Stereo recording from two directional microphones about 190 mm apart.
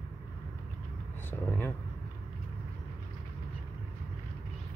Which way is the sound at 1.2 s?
10° left (ahead or behind).